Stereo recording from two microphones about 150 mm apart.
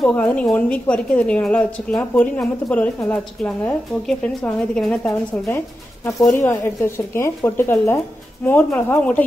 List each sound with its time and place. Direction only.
0.0 s a woman's voice: 10° left (ahead or behind)
6.3 s a woman's voice: 15° left (ahead or behind)